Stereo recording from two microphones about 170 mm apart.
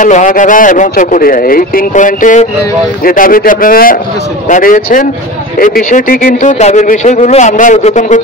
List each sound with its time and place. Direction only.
0.0 s speech: 50° left (ahead or behind)